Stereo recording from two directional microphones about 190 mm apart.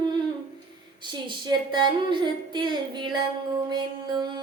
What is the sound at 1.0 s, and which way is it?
Speech, 25° right (ahead or behind).